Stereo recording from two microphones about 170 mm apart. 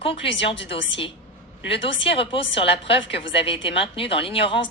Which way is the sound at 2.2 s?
30° left (ahead or behind).